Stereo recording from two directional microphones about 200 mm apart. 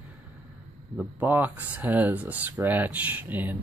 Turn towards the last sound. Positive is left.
turn(degrees=-10)  # may be behind; listen again after turning